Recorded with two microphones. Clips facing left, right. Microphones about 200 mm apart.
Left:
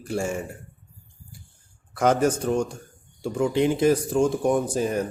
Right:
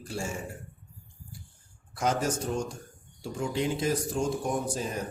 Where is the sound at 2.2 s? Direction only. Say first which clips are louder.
Left 8 dB; 60° left (ahead or behind).